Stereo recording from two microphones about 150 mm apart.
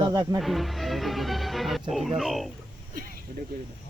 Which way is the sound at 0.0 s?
30° right (ahead or behind).